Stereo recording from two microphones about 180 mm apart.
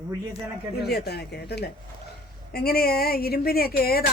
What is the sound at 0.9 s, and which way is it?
Speech, 65° left (ahead or behind).